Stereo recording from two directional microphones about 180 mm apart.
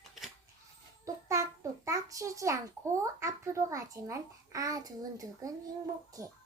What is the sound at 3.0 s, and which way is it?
A child's voice, 15° right (ahead or behind).